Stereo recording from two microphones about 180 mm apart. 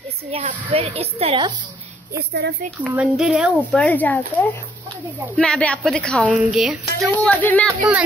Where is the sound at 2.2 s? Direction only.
70° right (ahead or behind).